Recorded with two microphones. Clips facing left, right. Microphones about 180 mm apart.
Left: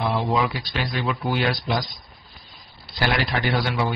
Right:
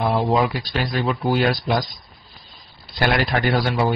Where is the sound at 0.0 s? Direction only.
45° right (ahead or behind).